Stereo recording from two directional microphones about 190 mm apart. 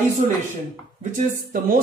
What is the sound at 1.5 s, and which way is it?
Speech, 45° right (ahead or behind).